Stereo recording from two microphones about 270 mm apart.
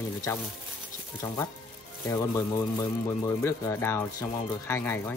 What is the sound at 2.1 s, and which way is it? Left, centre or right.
Speech, centre.